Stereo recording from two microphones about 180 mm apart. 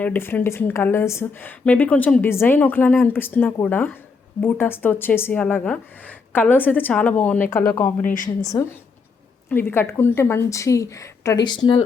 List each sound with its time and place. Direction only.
0.0 s a woman's voice: 10° left (ahead or behind)
8.0 s a woman's voice: 50° left (ahead or behind)
8.5 s a woman's voice: 20° left (ahead or behind)